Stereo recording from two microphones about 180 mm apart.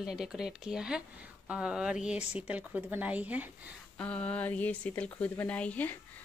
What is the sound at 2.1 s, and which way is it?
Speech, 35° left (ahead or behind).